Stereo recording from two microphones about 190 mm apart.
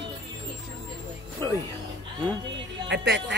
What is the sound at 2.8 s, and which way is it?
Speech, 65° right (ahead or behind).